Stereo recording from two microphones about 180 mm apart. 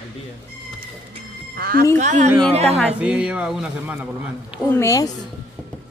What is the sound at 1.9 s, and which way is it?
Speech, 40° right (ahead or behind).